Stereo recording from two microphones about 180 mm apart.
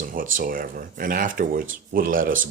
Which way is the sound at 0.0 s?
50° right (ahead or behind).